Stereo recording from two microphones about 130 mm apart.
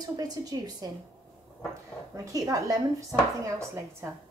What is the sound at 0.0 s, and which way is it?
Speech, 30° right (ahead or behind).